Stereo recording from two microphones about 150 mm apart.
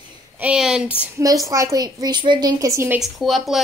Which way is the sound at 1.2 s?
20° right (ahead or behind).